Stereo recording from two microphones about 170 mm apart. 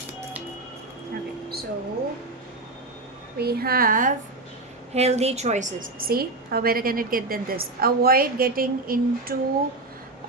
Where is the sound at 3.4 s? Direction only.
65° right (ahead or behind).